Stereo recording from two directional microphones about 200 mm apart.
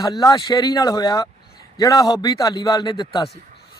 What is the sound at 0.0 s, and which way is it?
A man's voice, 20° left (ahead or behind).